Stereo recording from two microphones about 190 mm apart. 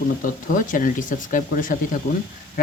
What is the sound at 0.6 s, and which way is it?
Speech, 45° left (ahead or behind).